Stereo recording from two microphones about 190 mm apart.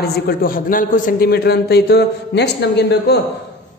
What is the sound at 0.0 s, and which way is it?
A woman's voice, 55° left (ahead or behind).